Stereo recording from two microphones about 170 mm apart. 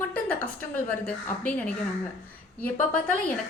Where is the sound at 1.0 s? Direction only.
5° left (ahead or behind).